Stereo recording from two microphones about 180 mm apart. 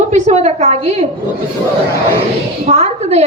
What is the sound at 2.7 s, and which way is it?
Speech, 40° right (ahead or behind).